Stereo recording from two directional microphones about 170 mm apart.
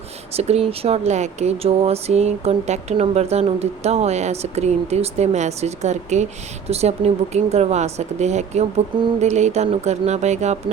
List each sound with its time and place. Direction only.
0.3 s speech: 35° right (ahead or behind)